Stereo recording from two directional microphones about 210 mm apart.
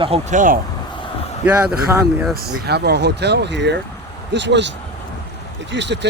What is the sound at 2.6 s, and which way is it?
Speech, 50° right (ahead or behind).